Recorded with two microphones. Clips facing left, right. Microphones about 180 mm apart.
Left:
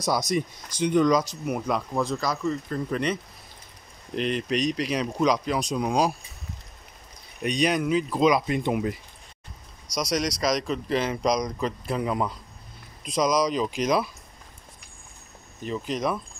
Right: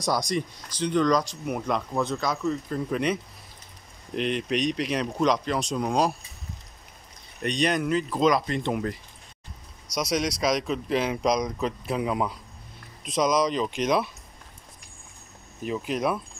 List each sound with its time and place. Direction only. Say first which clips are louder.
0.3 s speech: left 2 dB; 10° left (ahead or behind)
7.4 s speech: left 1 dB; centre (ahead or behind)
9.9 s speech: even; 5° right (ahead or behind)
15.6 s speech: right 1 dB; 5° right (ahead or behind)